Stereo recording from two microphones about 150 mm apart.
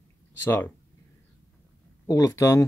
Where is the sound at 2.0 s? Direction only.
20° left (ahead or behind).